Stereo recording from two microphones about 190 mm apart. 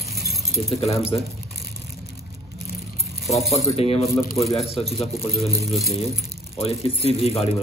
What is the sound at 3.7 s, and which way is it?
Speech, 30° left (ahead or behind).